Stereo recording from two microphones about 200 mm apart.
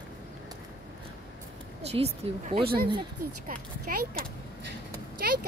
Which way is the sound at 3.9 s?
45° right (ahead or behind).